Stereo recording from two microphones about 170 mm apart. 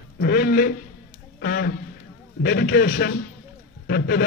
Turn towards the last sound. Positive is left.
turn(degrees=75)  # may be behind; listen again after turning